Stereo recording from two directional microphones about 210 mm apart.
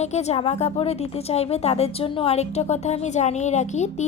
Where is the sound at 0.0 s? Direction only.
30° left (ahead or behind).